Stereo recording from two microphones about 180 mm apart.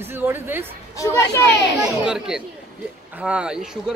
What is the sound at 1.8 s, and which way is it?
Speech, 5° right (ahead or behind).